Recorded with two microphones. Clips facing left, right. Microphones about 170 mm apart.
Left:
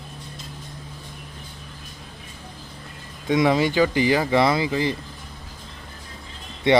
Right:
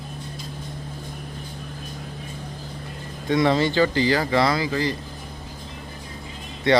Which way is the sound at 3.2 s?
15° left (ahead or behind).